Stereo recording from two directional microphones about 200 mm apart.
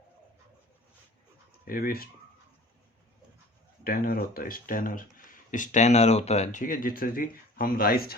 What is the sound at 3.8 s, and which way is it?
Speech, 45° left (ahead or behind).